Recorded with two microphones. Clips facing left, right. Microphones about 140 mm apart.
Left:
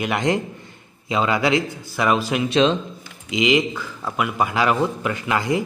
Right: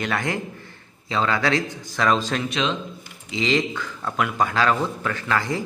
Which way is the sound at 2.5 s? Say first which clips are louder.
Left 11 dB; 35° left (ahead or behind).